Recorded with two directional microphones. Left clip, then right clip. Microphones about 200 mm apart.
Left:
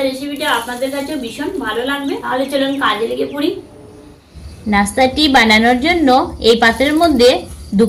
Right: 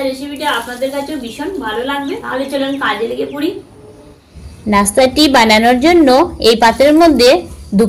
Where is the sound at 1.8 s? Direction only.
Centre (ahead or behind).